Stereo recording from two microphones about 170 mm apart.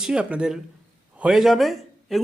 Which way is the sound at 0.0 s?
5° right (ahead or behind).